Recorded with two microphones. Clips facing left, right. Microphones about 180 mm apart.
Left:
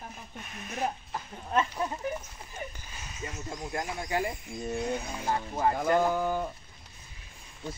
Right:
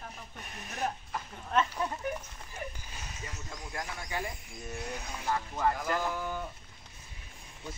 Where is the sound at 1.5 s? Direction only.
10° left (ahead or behind).